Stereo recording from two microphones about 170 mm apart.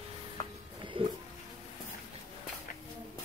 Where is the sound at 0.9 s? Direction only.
30° right (ahead or behind).